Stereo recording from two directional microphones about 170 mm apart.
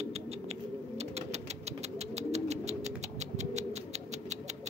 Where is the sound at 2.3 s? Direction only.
40° right (ahead or behind).